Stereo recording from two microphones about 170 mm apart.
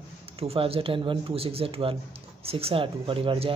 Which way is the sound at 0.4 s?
35° right (ahead or behind).